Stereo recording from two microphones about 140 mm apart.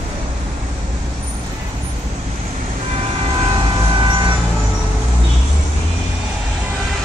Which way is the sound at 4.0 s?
30° right (ahead or behind).